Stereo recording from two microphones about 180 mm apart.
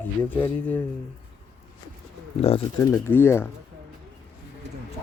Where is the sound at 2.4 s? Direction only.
35° left (ahead or behind).